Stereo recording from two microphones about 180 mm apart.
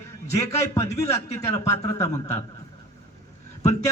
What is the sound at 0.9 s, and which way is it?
Speech, 35° left (ahead or behind).